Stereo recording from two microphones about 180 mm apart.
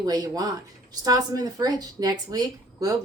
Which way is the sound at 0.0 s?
20° right (ahead or behind).